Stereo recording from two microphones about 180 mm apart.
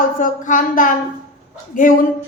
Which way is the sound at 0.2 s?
45° left (ahead or behind).